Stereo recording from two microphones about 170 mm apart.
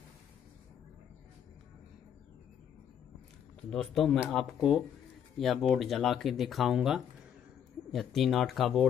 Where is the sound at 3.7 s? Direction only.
5° left (ahead or behind).